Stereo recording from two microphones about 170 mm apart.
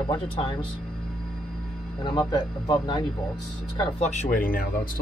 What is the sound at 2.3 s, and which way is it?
Speech, 25° left (ahead or behind).